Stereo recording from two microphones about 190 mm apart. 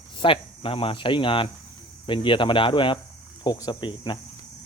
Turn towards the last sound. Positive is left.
turn(degrees=25)  # may be behind; listen again after turning